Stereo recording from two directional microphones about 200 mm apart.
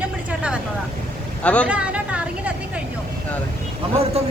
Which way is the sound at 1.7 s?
5° right (ahead or behind).